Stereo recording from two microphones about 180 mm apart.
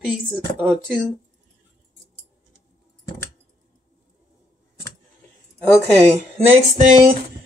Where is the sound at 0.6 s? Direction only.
Centre (ahead or behind).